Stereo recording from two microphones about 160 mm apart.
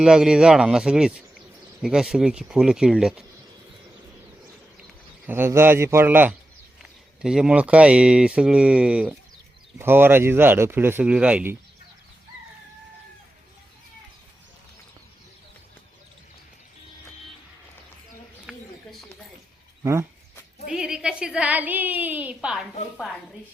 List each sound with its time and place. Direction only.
0.0 s speech: 5° right (ahead or behind)
5.2 s a woman's voice: 15° right (ahead or behind)
18.5 s a sound: centre (ahead or behind)
19.8 s speech: 20° right (ahead or behind)
20.7 s a woman's voice: 5° right (ahead or behind)